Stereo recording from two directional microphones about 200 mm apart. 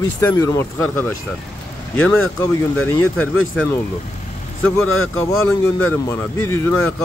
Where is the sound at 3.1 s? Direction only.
10° left (ahead or behind).